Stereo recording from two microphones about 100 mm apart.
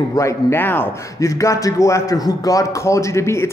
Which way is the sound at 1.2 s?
35° left (ahead or behind).